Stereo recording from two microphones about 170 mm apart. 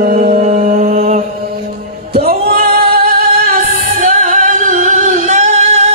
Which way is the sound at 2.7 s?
60° right (ahead or behind).